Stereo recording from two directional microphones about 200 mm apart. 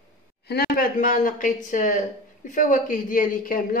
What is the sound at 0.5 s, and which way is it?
A woman's voice, 50° left (ahead or behind).